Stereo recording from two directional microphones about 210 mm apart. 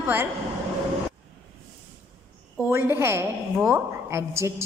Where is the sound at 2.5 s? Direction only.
10° right (ahead or behind).